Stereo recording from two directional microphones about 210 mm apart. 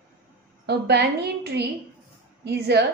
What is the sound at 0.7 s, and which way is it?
A woman's voice, 50° right (ahead or behind).